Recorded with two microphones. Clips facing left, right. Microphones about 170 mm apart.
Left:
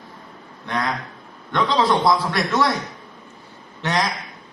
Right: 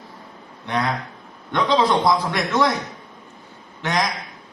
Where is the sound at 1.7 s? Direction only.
20° right (ahead or behind).